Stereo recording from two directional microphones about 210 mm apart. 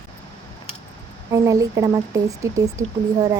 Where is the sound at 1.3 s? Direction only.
15° right (ahead or behind).